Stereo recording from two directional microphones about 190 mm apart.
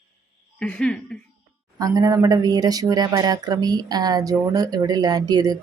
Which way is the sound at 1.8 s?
20° right (ahead or behind).